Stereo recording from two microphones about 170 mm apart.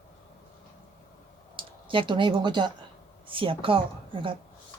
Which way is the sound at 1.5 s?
30° right (ahead or behind).